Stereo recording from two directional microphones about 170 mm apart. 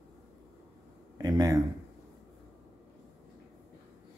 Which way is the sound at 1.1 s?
20° right (ahead or behind).